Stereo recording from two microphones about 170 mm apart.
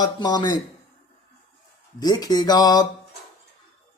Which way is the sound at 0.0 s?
25° left (ahead or behind).